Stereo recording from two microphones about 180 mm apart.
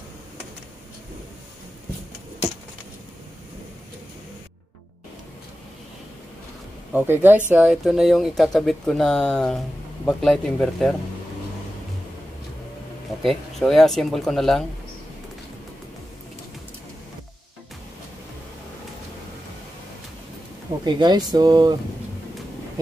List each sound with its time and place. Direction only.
6.9 s speech: 10° right (ahead or behind)
13.2 s speech: centre (ahead or behind)
20.8 s speech: 25° right (ahead or behind)